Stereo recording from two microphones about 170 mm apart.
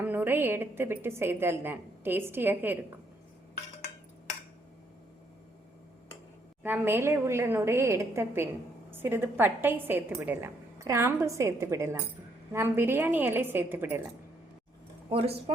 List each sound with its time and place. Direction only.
0.0 s a woman's voice: 10° right (ahead or behind)
6.6 s a woman's voice: 10° right (ahead or behind)
15.1 s speech: 35° right (ahead or behind)